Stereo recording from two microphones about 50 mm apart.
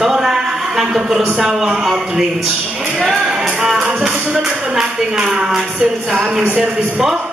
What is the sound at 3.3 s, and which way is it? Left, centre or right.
Music, centre.